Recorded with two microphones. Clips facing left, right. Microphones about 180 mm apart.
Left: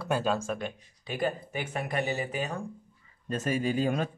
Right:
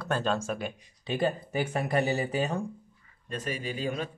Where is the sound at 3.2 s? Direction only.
45° left (ahead or behind).